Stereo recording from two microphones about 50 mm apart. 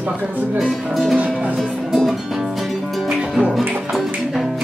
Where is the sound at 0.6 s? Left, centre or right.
Centre.